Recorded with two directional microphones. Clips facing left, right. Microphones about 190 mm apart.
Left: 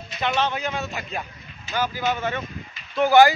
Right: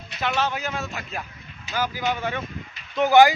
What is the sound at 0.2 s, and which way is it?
Speech, 5° right (ahead or behind).